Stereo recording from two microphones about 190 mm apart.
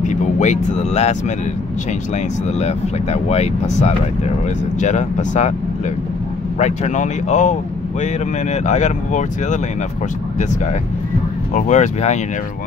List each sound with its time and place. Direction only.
0.0 s music: 40° left (ahead or behind)
2.6 s speech: 35° left (ahead or behind)
6.6 s speech: 40° left (ahead or behind)
11.5 s speech: 40° left (ahead or behind)